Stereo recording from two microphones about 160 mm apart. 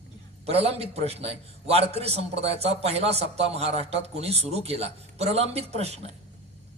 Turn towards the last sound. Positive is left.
turn(degrees=-40)  # may be behind; listen again after turning